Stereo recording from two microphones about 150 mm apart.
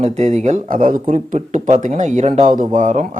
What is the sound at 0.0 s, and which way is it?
Speech, 50° right (ahead or behind).